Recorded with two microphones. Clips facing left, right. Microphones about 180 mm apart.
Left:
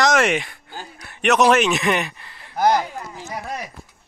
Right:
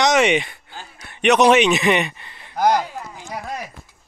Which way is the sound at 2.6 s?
10° right (ahead or behind).